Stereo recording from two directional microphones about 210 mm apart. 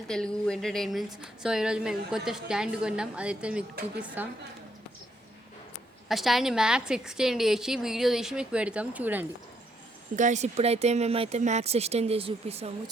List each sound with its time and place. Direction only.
0.1 s a woman's voice: 5° left (ahead or behind)
6.1 s a woman's voice: centre (ahead or behind)
10.2 s speech: 35° right (ahead or behind)